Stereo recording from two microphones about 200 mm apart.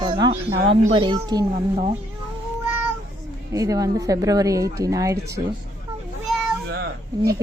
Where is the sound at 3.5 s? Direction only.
15° right (ahead or behind).